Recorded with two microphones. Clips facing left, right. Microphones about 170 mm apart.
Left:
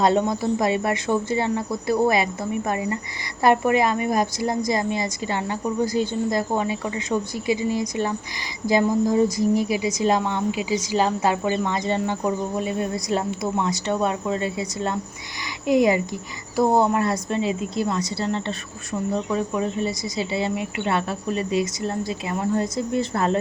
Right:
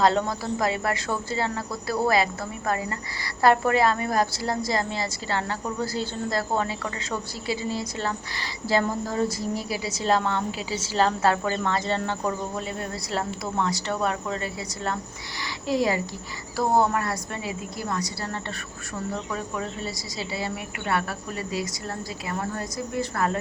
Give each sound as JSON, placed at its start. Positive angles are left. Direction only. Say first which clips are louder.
{"t": 0.0, "sound": "a woman's voice", "louder": "left 3 dB", "side_deg": 20}